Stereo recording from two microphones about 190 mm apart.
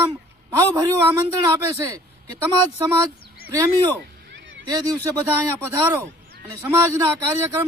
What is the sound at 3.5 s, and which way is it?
Speech, 20° right (ahead or behind).